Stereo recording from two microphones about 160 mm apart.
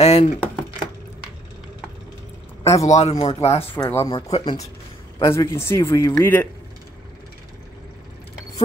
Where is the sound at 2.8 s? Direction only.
45° left (ahead or behind).